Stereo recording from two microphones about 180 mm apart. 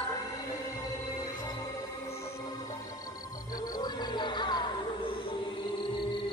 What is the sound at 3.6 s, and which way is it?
Music, 20° left (ahead or behind).